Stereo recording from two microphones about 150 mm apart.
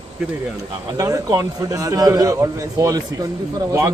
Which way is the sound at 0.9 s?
20° right (ahead or behind).